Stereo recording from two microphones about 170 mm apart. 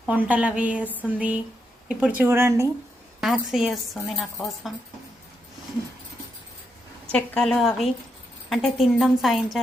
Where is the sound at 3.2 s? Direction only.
Centre (ahead or behind).